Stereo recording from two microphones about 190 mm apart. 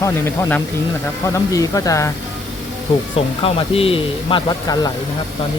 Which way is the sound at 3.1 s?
30° left (ahead or behind).